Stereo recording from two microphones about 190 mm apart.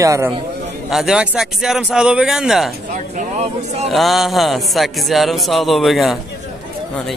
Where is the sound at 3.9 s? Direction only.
Centre (ahead or behind).